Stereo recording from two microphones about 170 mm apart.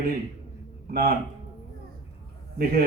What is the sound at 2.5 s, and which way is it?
Speech, 65° right (ahead or behind).